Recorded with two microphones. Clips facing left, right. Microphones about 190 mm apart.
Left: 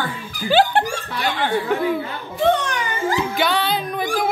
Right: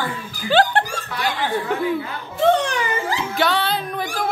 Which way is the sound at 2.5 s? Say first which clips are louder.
Right 2 dB; 30° right (ahead or behind).